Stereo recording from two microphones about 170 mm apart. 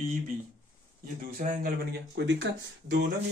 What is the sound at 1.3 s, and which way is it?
Speech, 55° right (ahead or behind).